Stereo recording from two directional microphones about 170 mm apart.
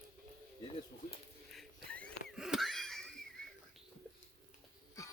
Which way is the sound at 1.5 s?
5° left (ahead or behind).